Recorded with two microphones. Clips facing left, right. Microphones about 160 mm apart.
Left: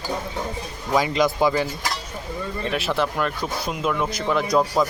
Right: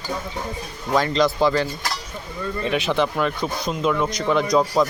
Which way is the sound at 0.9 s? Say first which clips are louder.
Right 1 dB; 10° left (ahead or behind).